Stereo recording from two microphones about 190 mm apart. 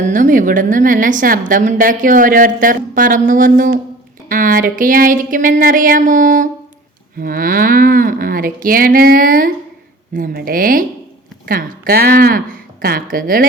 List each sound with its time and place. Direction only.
0.0 s a woman's voice: 45° right (ahead or behind)